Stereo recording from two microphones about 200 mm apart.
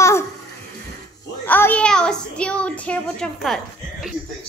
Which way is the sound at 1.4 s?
10° left (ahead or behind).